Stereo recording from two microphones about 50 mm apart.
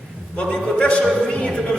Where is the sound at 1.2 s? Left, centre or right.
Centre.